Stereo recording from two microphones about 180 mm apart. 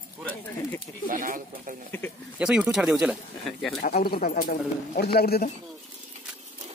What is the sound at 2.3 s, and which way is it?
Speech, 5° right (ahead or behind).